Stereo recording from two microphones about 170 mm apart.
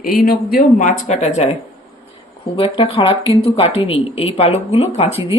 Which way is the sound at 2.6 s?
35° left (ahead or behind).